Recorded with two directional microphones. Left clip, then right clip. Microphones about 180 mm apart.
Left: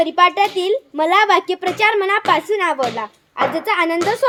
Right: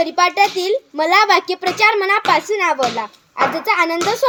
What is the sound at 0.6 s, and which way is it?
Speech, 5° left (ahead or behind).